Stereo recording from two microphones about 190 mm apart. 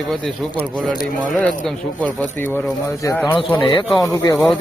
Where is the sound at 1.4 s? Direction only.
Centre (ahead or behind).